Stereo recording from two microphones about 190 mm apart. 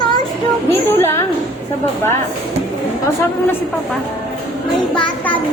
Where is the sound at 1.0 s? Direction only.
15° left (ahead or behind).